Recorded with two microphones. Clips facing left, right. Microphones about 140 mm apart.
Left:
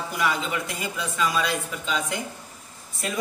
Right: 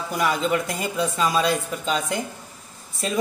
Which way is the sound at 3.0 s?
25° right (ahead or behind).